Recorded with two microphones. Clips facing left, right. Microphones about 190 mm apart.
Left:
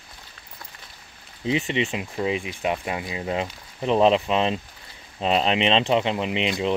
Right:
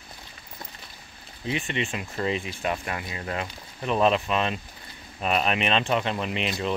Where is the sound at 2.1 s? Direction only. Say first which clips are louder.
Left 2 dB; 10° left (ahead or behind).